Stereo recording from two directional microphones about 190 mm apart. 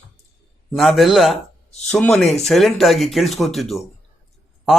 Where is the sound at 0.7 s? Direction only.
Centre (ahead or behind).